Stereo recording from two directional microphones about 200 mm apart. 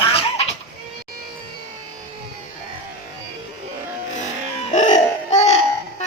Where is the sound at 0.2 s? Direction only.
30° left (ahead or behind).